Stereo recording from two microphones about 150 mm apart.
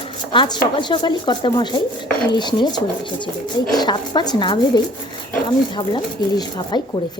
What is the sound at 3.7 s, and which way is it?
Speech, 30° left (ahead or behind).